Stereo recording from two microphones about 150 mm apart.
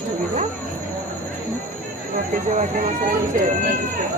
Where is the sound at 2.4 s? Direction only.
55° right (ahead or behind).